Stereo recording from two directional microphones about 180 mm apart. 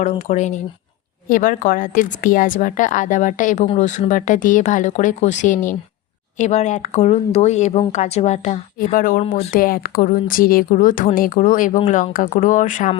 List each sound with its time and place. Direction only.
0.0 s speech: 40° left (ahead or behind)